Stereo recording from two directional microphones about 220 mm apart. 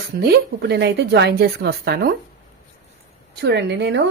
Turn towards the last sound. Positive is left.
turn(degrees=-50)  # may be behind; listen again after turning